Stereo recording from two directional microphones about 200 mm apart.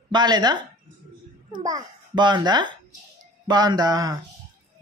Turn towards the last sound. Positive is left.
turn(degrees=-20)  # may be behind; listen again after turning